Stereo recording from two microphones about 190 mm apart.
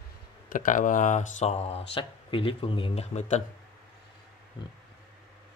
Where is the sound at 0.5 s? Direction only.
45° left (ahead or behind).